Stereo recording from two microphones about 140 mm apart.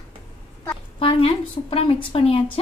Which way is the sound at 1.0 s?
40° left (ahead or behind).